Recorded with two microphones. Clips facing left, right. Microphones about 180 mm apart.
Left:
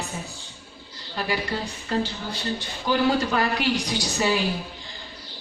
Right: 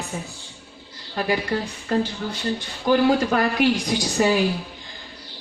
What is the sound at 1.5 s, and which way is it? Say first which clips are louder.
Speech: right 4 dB; 50° right (ahead or behind).